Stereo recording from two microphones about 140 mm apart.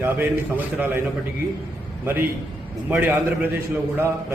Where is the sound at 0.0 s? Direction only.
15° right (ahead or behind).